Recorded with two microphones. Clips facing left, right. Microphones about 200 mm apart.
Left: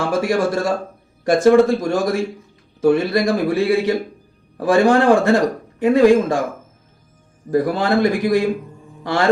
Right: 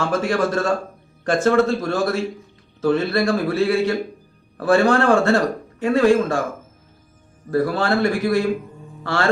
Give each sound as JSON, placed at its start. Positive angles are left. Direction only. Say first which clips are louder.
{"t": 0.0, "sound": "speech", "louder": "left 2 dB", "side_deg": 10}
{"t": 7.5, "sound": "speech", "louder": "left 2 dB", "side_deg": 15}